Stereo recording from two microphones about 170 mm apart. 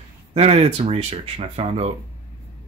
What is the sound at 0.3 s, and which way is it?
Speech, 35° right (ahead or behind).